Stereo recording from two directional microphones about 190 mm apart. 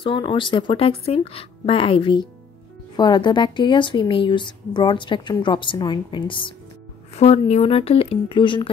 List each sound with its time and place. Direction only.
0.0 s a woman's voice: 25° left (ahead or behind)